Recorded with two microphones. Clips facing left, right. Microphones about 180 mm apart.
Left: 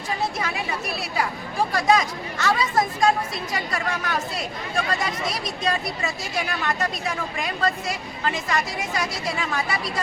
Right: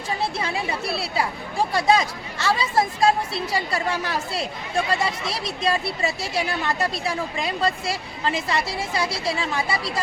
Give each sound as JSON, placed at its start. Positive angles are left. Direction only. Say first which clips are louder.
{"t": 1.7, "sound": "speech", "louder": "right 1 dB", "side_deg": -30}